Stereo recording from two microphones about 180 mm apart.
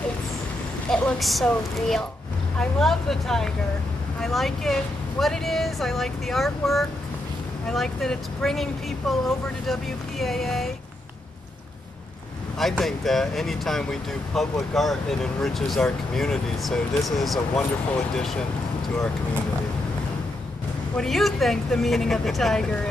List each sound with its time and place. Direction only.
0.8 s speech: 5° left (ahead or behind)
12.5 s speech: centre (ahead or behind)
20.9 s speech: centre (ahead or behind)